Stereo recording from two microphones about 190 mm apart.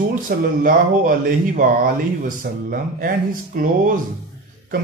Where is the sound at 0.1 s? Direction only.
45° right (ahead or behind).